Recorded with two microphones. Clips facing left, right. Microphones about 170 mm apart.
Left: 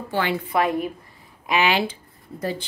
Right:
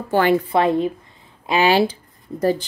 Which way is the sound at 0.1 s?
50° right (ahead or behind).